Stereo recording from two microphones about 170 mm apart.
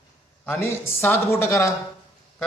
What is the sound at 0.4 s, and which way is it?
A man's voice, 10° left (ahead or behind).